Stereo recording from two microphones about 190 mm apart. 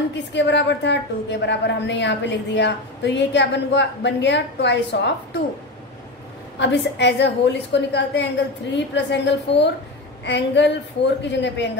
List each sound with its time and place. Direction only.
0.3 s a woman's voice: 65° left (ahead or behind)
6.6 s a woman's voice: 65° left (ahead or behind)